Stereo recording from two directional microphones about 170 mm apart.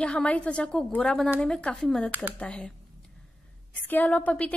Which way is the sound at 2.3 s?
5° left (ahead or behind).